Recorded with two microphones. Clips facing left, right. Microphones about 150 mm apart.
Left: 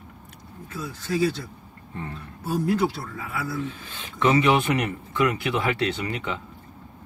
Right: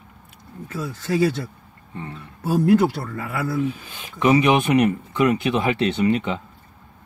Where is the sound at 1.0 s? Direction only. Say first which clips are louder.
Right 4 dB; 55° right (ahead or behind).